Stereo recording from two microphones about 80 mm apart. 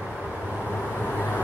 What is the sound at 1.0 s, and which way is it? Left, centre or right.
Vehicle, left.